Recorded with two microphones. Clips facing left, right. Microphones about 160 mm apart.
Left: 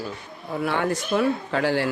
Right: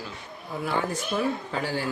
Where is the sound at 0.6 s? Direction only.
70° left (ahead or behind).